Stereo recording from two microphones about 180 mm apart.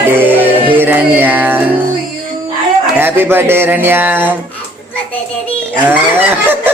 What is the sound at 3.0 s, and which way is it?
Speech, 10° right (ahead or behind).